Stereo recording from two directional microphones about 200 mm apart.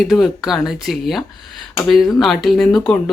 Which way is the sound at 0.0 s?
Centre (ahead or behind).